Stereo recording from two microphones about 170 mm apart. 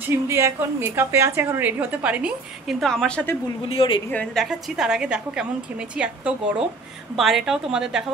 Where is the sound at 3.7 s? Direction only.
30° left (ahead or behind).